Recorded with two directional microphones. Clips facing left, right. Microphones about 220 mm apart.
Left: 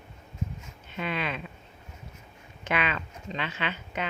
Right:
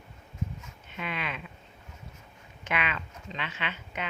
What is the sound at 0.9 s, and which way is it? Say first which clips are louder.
Speech: left 4 dB; 35° left (ahead or behind).